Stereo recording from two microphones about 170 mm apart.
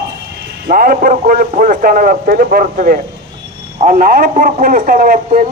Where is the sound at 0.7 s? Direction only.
55° right (ahead or behind).